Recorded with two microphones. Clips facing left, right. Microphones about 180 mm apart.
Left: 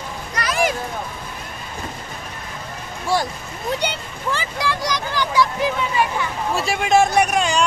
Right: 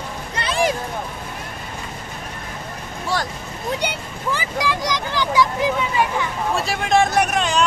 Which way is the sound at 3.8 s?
10° right (ahead or behind).